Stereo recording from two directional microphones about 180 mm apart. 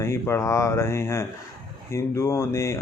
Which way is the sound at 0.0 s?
15° left (ahead or behind).